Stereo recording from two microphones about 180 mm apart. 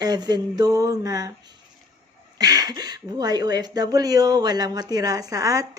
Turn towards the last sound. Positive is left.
turn(degrees=-20)  # may be behind; listen again after turning